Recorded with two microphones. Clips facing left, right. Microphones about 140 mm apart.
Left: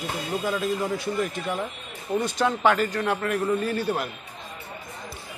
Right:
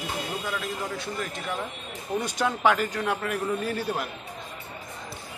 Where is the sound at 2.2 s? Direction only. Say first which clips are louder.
Left 2 dB; 5° right (ahead or behind).